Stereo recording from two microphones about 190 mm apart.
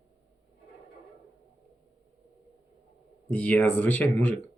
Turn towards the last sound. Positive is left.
turn(degrees=10)  # may be behind; listen again after turning